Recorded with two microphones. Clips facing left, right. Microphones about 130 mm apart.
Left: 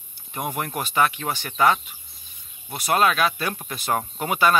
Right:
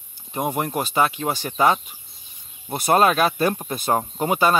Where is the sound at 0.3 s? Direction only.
25° right (ahead or behind).